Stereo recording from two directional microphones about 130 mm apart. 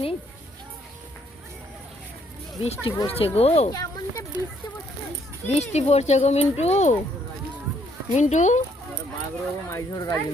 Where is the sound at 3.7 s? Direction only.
30° left (ahead or behind).